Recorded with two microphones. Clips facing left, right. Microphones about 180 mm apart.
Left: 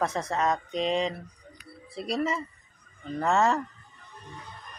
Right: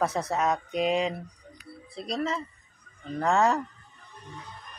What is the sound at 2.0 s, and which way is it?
Speech, 5° left (ahead or behind).